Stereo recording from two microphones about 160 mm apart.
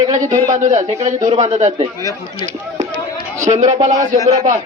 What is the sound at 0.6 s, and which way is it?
A man's voice, 50° right (ahead or behind).